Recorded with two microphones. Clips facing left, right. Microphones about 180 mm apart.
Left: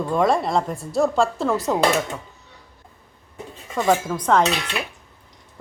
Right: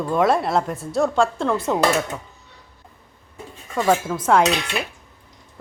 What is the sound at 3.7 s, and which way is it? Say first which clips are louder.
Speech: even; centre (ahead or behind).